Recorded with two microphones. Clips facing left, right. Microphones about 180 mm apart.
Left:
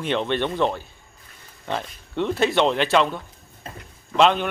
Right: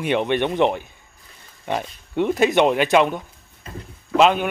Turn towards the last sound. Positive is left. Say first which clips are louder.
# right 2 dB
turn(degrees=-10)  # may be behind; listen again after turning